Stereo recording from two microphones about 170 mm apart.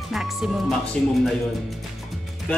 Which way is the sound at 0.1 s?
Centre (ahead or behind).